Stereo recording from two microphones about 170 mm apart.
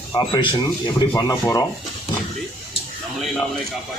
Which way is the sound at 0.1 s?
25° left (ahead or behind).